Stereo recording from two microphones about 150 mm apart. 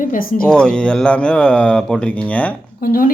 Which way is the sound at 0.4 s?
5° left (ahead or behind).